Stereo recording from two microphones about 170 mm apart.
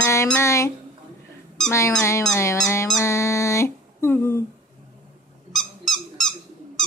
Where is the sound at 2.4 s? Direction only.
15° left (ahead or behind).